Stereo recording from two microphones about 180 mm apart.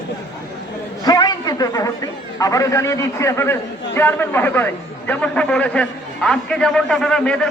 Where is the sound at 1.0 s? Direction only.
20° left (ahead or behind).